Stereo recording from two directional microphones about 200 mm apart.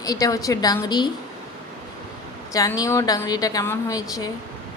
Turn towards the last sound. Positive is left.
turn(degrees=20)  # may be behind; listen again after turning